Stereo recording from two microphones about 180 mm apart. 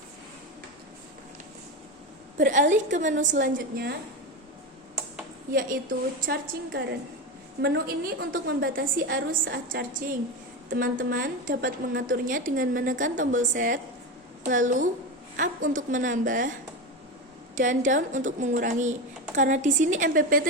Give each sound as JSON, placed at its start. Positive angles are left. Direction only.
{"t": 2.4, "sound": "a woman's voice", "side_deg": -45}
{"t": 5.5, "sound": "a woman's voice", "side_deg": -50}
{"t": 17.5, "sound": "a woman's voice", "side_deg": -45}